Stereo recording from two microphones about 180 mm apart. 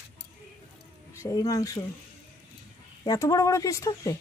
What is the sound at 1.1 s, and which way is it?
Speech, 20° left (ahead or behind).